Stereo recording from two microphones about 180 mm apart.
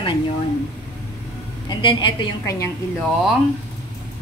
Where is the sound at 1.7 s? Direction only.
25° left (ahead or behind).